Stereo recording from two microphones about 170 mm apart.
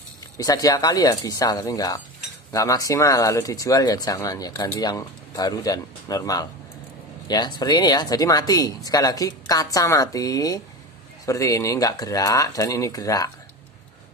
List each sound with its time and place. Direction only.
0.3 s speech: 20° left (ahead or behind)